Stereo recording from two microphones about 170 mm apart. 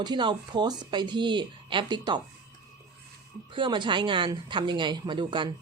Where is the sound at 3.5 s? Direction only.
30° right (ahead or behind).